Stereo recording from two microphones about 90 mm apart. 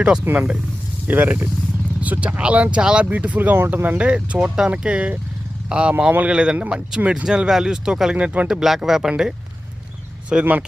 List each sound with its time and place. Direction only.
0.3 s speech: 10° right (ahead or behind)
10.3 s speech: 10° right (ahead or behind)